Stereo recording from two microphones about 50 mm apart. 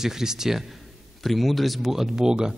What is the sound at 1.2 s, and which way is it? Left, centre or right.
A man's voice, centre.